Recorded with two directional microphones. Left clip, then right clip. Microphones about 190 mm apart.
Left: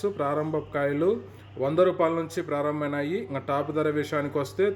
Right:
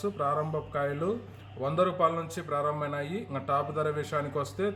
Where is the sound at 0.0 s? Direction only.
20° left (ahead or behind).